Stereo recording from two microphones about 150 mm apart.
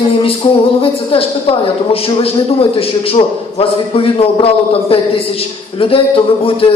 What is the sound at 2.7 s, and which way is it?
A man's voice, 40° left (ahead or behind).